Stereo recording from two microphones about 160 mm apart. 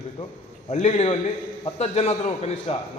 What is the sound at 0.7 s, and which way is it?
A man's voice, 45° left (ahead or behind).